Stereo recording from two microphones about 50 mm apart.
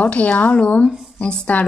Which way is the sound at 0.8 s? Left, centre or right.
Centre.